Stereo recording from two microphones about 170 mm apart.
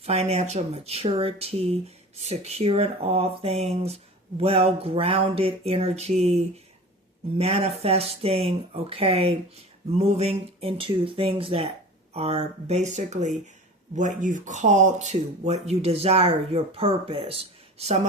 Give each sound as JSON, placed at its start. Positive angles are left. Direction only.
{"t": 0.0, "sound": "speech", "side_deg": -40}